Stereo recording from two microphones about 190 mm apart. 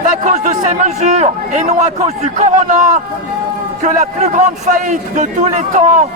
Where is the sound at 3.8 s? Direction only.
40° right (ahead or behind).